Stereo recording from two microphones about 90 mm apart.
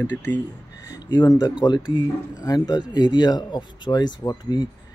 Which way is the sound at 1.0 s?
50° left (ahead or behind).